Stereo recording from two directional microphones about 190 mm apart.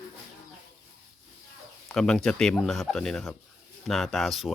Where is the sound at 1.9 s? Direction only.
5° left (ahead or behind).